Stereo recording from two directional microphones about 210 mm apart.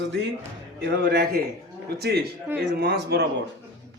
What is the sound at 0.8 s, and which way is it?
A man's voice, 50° right (ahead or behind).